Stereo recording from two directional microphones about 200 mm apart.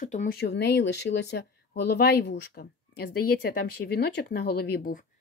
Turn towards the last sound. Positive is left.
turn(degrees=50)  # may be behind; listen again after turning